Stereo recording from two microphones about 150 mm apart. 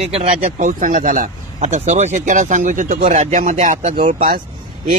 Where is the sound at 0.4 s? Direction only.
55° right (ahead or behind).